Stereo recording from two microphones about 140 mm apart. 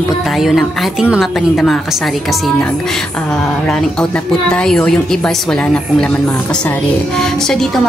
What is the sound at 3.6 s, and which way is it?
A woman's voice, 5° left (ahead or behind).